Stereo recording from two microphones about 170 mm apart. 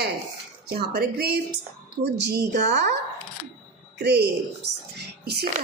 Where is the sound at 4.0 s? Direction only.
75° right (ahead or behind).